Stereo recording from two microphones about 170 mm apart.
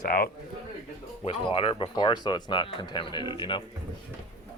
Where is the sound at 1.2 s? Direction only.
35° left (ahead or behind).